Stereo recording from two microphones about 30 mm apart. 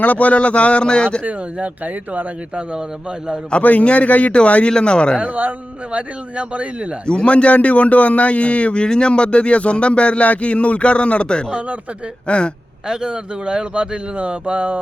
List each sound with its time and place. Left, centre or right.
0.0 s speech: left
1.6 s speech: right
3.6 s a man's voice: left
3.8 s speech: left
4.7 s speech: left
5.3 s a man's voice: right
5.9 s speech: right
7.3 s speech: left
13.1 s speech: right
14.2 s speech: right